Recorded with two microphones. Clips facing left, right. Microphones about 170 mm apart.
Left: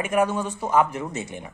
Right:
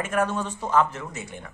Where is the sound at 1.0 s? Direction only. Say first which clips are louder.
Left 5 dB; 25° left (ahead or behind).